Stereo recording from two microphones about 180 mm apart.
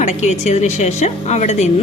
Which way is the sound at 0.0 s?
40° left (ahead or behind).